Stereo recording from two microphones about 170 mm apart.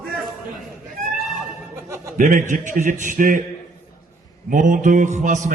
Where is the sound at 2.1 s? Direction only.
50° right (ahead or behind).